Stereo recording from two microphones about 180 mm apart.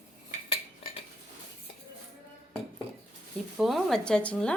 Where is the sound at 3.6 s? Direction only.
Centre (ahead or behind).